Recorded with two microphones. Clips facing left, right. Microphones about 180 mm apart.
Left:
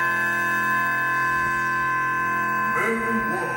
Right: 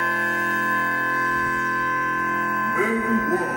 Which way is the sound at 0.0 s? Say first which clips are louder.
Right 2 dB; 35° right (ahead or behind).